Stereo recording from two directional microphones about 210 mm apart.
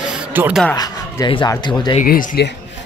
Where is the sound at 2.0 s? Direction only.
40° left (ahead or behind).